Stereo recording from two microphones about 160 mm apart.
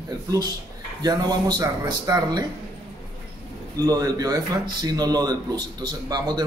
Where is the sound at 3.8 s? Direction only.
25° right (ahead or behind).